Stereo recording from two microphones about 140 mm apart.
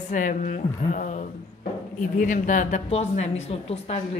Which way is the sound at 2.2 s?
70° left (ahead or behind).